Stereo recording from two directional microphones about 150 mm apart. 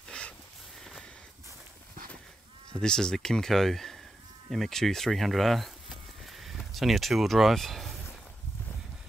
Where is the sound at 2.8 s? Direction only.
5° left (ahead or behind).